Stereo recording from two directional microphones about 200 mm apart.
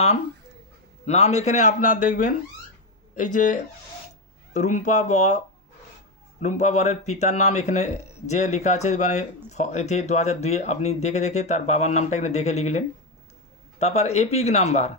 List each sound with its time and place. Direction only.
1.0 s speech: 35° left (ahead or behind)
6.4 s speech: 35° left (ahead or behind)